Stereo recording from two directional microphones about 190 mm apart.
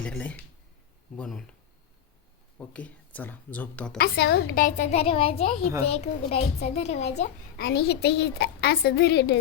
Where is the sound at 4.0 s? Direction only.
55° left (ahead or behind); by 7.1 s 35° left (ahead or behind).